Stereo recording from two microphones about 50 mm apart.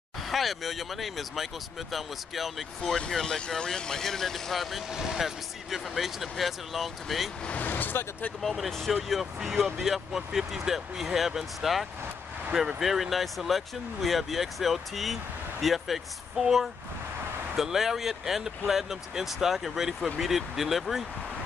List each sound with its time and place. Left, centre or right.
0.3 s speech: centre
3.1 s speech: centre
7.4 s speech: left
8.4 s speech: centre